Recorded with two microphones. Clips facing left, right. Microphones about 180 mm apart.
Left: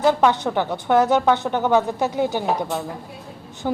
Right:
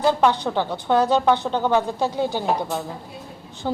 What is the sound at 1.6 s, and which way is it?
A woman's voice, 15° left (ahead or behind).